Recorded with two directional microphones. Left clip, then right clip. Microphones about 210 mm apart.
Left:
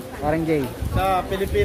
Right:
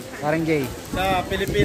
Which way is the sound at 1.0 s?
10° left (ahead or behind).